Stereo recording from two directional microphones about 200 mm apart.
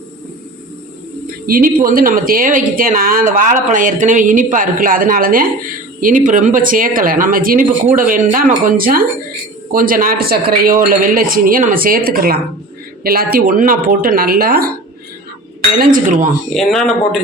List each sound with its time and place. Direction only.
1.5 s speech: 45° right (ahead or behind)
15.8 s speech: 40° right (ahead or behind)
16.5 s speech: centre (ahead or behind)